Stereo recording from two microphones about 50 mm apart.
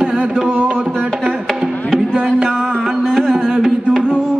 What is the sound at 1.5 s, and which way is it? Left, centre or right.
Music, centre.